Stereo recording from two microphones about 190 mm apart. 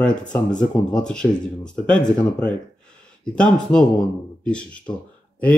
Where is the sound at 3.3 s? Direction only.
5° left (ahead or behind).